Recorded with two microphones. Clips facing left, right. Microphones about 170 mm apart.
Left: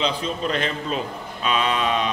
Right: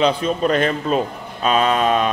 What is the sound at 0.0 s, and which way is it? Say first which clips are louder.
A man's voice: right 7 dB; 50° right (ahead or behind).